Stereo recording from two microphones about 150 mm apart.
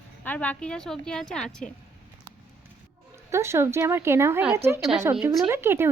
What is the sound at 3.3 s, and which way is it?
A woman's voice, 15° right (ahead or behind).